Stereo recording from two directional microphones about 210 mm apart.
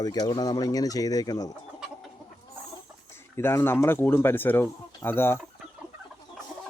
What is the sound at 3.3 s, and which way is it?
Speech, 10° left (ahead or behind).